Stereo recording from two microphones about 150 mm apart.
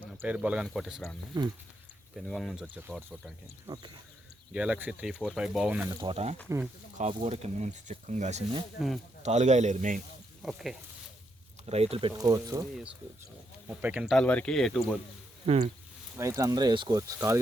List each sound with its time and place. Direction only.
0.2 s speech: 10° right (ahead or behind)
1.3 s speech: 30° right (ahead or behind)
2.1 s speech: centre (ahead or behind)
4.5 s speech: 5° right (ahead or behind)
6.0 s speech: 40° right (ahead or behind)
8.8 s speech: centre (ahead or behind)
9.2 s speech: 50° right (ahead or behind)
10.4 s speech: centre (ahead or behind)
11.6 s speech: 45° right (ahead or behind)
12.1 s speech: 25° right (ahead or behind)
13.7 s speech: 10° right (ahead or behind)
14.2 s speech: 10° left (ahead or behind)
15.4 s speech: 45° right (ahead or behind)
16.1 s speech: 20° right (ahead or behind)